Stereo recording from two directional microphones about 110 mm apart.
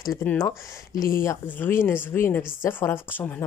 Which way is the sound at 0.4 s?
30° left (ahead or behind).